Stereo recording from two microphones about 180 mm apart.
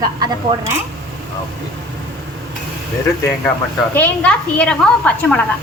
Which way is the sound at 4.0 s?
5° left (ahead or behind).